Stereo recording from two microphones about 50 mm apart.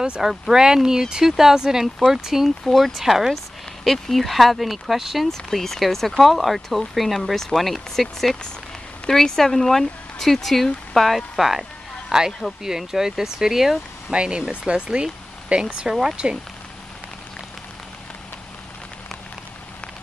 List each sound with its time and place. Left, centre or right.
0.2 s speech: centre
2.6 s speech: centre
12.6 s speech: centre
14.1 s speech: centre